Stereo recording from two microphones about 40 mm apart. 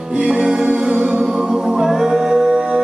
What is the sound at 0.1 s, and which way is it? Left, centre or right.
Music, right.